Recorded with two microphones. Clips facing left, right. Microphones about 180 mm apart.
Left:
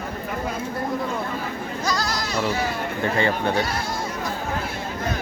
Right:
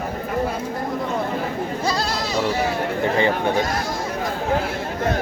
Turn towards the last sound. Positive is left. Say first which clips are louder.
# right 2 dB
turn(degrees=-20)  # may be behind; listen again after turning